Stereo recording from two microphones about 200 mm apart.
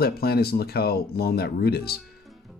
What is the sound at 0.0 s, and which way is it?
Speech, 50° left (ahead or behind).